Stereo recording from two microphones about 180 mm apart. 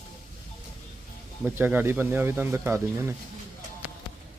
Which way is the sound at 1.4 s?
10° right (ahead or behind).